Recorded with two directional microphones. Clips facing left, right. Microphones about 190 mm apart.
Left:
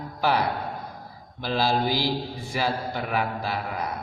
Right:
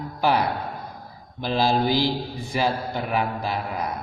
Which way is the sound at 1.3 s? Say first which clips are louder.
Right 2 dB; 20° right (ahead or behind).